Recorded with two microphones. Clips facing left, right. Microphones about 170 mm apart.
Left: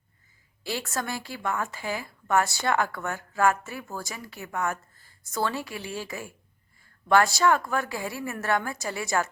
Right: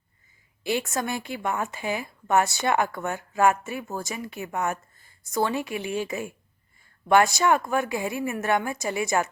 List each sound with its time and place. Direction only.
0.6 s a woman's voice: 20° right (ahead or behind)